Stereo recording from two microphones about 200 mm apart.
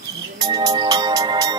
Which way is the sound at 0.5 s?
20° right (ahead or behind).